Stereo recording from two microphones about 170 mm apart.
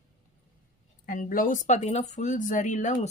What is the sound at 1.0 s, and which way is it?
Speech, 55° left (ahead or behind).